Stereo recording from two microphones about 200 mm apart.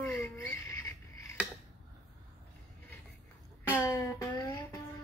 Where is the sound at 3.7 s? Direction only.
15° left (ahead or behind).